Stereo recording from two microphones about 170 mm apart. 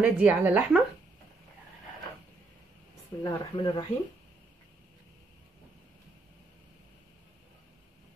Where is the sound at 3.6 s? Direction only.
25° left (ahead or behind).